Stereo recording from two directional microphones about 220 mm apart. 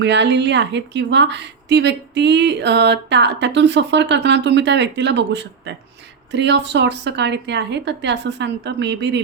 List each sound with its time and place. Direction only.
0.0 s a woman's voice: 50° right (ahead or behind)